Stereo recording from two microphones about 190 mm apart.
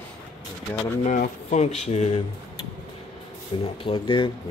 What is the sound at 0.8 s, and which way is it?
Speech, 40° left (ahead or behind).